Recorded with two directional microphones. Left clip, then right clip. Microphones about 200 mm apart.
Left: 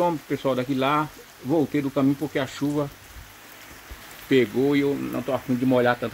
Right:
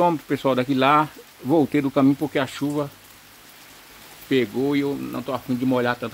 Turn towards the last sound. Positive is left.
turn(degrees=0)  # may be behind; listen again after turning